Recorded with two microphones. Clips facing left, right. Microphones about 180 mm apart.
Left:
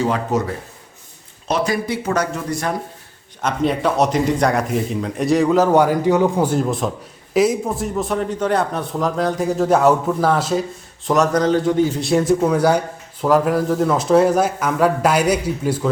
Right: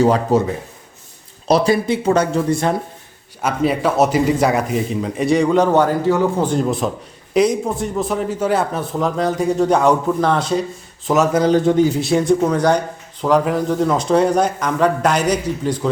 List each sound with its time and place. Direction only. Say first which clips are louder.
0.0 s speech: right 5 dB; 35° right (ahead or behind)
1.5 s speech: right 5 dB; 35° right (ahead or behind)
3.4 s a man's voice: right 1 dB; 5° right (ahead or behind)
11.5 s speech: right 3 dB; 20° right (ahead or behind)
11.9 s a man's voice: right 1 dB; centre (ahead or behind)